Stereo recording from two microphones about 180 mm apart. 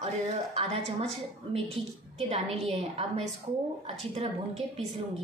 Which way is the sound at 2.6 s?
35° right (ahead or behind).